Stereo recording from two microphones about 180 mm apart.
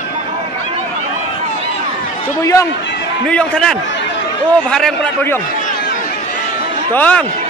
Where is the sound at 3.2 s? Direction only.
5° left (ahead or behind).